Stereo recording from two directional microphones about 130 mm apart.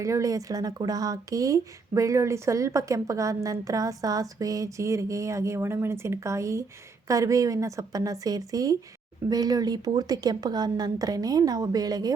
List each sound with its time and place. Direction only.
0.0 s speech: 25° right (ahead or behind)